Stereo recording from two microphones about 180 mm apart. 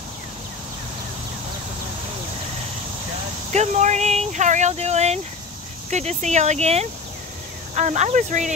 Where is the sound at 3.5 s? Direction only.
40° right (ahead or behind).